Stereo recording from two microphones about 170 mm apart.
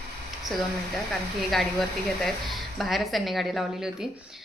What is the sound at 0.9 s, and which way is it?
A woman's voice, centre (ahead or behind).